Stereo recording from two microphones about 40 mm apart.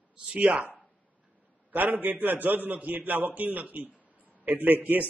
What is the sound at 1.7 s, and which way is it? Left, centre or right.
A man's voice, right.